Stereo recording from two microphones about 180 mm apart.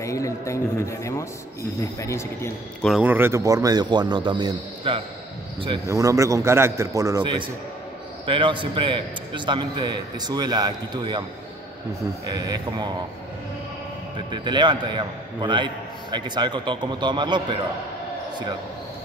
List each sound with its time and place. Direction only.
0.0 s speech: 15° left (ahead or behind)
3.0 s a man's voice: 10° right (ahead or behind)
12.3 s a man's voice: 20° right (ahead or behind)
14.3 s a man's voice: 25° right (ahead or behind)